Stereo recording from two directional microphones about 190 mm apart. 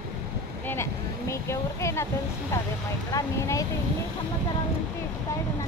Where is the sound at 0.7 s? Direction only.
15° left (ahead or behind).